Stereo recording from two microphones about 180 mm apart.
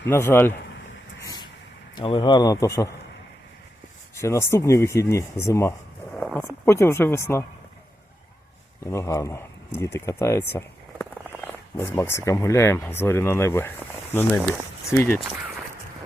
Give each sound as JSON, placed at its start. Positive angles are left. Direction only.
{"t": 0.1, "sound": "speech", "side_deg": 10}
{"t": 2.0, "sound": "speech", "side_deg": 25}
{"t": 4.1, "sound": "speech", "side_deg": 15}
{"t": 8.8, "sound": "speech", "side_deg": 15}